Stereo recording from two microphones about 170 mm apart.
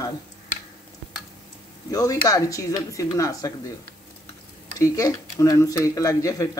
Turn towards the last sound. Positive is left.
turn(degrees=20)  # may be behind; listen again after turning